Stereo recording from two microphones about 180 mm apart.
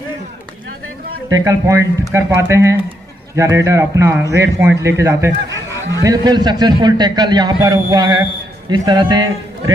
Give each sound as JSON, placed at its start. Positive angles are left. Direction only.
{"t": 1.3, "sound": "a man's voice", "side_deg": -15}